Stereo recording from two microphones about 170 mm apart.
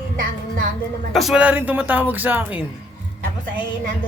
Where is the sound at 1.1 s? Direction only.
Centre (ahead or behind).